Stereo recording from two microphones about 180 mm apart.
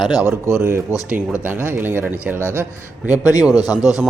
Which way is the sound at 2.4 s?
10° left (ahead or behind).